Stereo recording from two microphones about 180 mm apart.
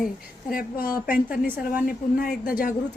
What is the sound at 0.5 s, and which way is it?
A woman's voice, 50° left (ahead or behind).